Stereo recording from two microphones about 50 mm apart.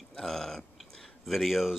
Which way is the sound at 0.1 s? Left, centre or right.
Centre.